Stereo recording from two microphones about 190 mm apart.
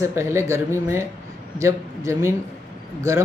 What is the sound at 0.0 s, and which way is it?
Speech, 15° right (ahead or behind).